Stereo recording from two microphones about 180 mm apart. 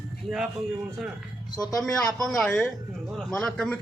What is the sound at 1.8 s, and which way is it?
A man's voice, centre (ahead or behind).